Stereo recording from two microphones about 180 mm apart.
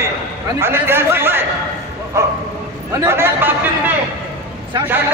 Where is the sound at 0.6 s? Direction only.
15° right (ahead or behind).